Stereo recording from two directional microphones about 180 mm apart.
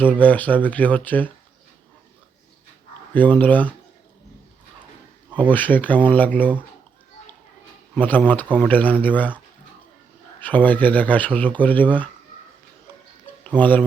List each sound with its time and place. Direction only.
0.0 s speech: 10° left (ahead or behind)
3.1 s speech: 10° left (ahead or behind)
5.5 s speech: 10° left (ahead or behind)
7.9 s speech: 10° left (ahead or behind)
10.4 s speech: 10° left (ahead or behind)
13.4 s speech: 10° left (ahead or behind)